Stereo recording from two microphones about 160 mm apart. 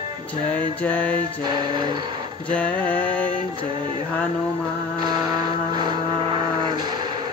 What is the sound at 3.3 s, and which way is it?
Music, 30° right (ahead or behind).